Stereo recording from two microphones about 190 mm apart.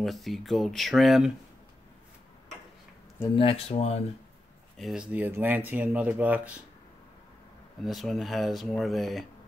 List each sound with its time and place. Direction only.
0.0 s speech: centre (ahead or behind)
3.3 s speech: 30° left (ahead or behind)
4.7 s speech: centre (ahead or behind)
7.8 s speech: centre (ahead or behind)